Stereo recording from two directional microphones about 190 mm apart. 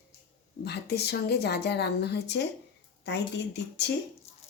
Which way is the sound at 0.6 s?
60° left (ahead or behind).